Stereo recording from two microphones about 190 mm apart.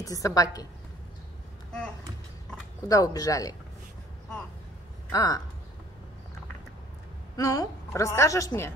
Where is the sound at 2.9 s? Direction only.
20° left (ahead or behind).